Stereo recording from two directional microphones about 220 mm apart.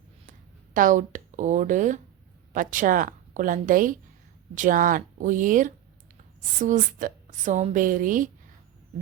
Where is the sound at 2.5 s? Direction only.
35° right (ahead or behind).